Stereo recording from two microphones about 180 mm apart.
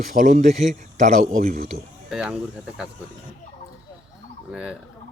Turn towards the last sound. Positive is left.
turn(degrees=-5)  # may be behind; listen again after turning